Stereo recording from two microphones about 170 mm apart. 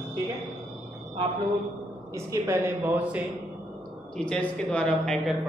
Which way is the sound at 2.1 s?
15° right (ahead or behind).